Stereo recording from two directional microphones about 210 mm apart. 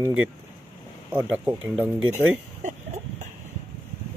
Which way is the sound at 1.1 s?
10° right (ahead or behind).